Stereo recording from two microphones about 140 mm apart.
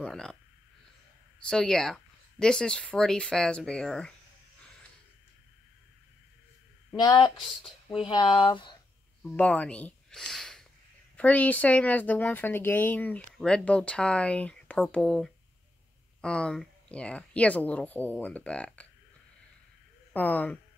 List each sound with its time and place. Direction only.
0.0 s speech: 5° left (ahead or behind)
1.5 s speech: 5° left (ahead or behind)
8.1 s speech: 35° left (ahead or behind)
9.2 s speech: 5° left (ahead or behind)
20.1 s speech: 10° left (ahead or behind)